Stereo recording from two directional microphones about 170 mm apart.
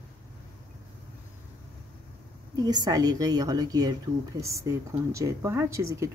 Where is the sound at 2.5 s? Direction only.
25° right (ahead or behind).